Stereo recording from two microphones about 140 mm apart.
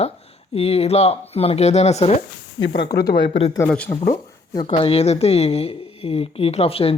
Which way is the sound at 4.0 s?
25° left (ahead or behind).